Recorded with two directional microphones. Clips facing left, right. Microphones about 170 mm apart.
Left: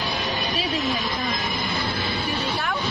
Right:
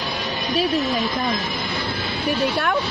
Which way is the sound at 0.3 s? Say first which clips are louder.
Right 8 dB; 40° right (ahead or behind).